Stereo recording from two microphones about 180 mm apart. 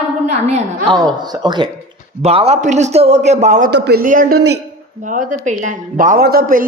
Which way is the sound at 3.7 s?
65° right (ahead or behind).